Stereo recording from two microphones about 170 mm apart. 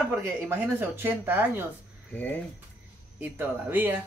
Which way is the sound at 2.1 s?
10° left (ahead or behind).